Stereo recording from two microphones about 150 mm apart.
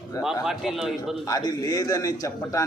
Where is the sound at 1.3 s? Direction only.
25° left (ahead or behind).